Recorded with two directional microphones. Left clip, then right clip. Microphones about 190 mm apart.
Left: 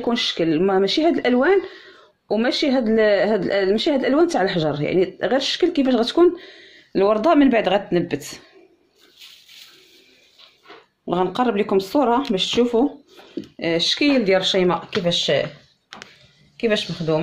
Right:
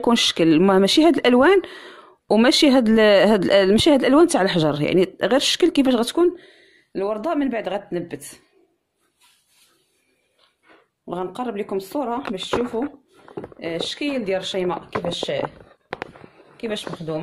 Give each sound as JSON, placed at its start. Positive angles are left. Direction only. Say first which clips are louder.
{"t": 0.0, "sound": "speech", "louder": "right 3 dB", "side_deg": -50}
{"t": 6.1, "sound": "speech", "louder": "left 3 dB", "side_deg": -15}
{"t": 11.1, "sound": "speech", "louder": "left 7 dB", "side_deg": 0}
{"t": 16.5, "sound": "speech", "louder": "left 7 dB", "side_deg": -10}